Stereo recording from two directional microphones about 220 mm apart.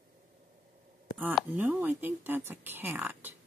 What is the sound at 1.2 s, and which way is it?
Speech, 10° right (ahead or behind).